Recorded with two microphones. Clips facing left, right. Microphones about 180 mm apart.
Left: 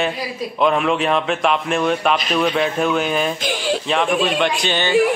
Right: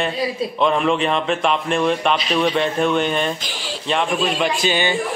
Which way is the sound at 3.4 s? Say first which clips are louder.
Left 9 dB; 55° left (ahead or behind).